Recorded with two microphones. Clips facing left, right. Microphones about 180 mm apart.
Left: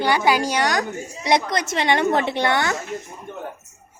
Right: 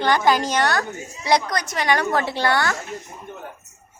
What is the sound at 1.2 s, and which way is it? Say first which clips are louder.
Speech: even; 25° left (ahead or behind).